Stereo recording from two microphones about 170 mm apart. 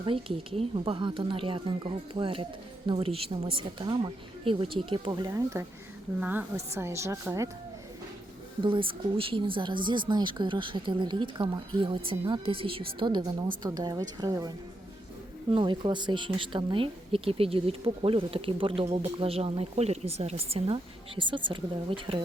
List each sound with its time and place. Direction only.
0.0 s speech: 30° right (ahead or behind)
6.1 s speech: 10° right (ahead or behind)
8.6 s speech: 30° right (ahead or behind)
15.5 s speech: 25° right (ahead or behind)